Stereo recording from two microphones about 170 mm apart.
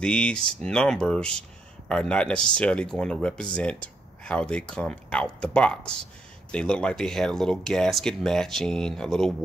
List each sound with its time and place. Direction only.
0.0 s speech: 5° left (ahead or behind)